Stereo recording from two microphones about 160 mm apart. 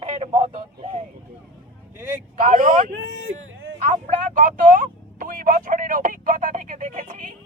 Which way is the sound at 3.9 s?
50° right (ahead or behind).